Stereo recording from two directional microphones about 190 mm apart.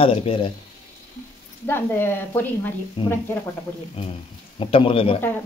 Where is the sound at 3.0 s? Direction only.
25° left (ahead or behind).